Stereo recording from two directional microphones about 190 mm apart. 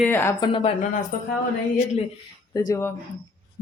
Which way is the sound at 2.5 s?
20° left (ahead or behind).